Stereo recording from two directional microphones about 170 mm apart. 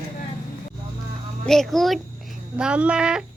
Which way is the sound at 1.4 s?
Centre (ahead or behind).